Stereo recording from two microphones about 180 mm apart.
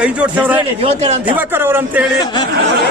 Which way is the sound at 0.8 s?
35° right (ahead or behind).